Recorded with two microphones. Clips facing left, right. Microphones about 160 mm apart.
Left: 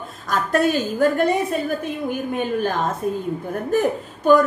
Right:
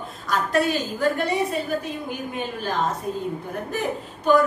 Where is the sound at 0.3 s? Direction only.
45° left (ahead or behind).